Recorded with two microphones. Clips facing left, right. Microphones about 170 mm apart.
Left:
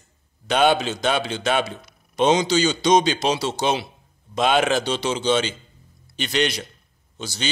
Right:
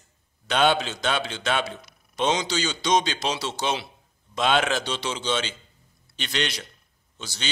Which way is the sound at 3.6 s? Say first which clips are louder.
Left 4 dB; 45° left (ahead or behind).